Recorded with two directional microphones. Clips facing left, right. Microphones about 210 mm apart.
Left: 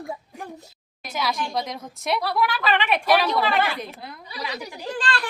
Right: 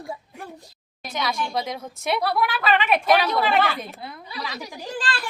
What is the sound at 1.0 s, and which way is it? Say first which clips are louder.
A woman's voice: even; 5° left (ahead or behind).